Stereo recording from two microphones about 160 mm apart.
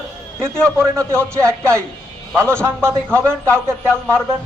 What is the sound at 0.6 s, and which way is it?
A man's voice, 15° right (ahead or behind).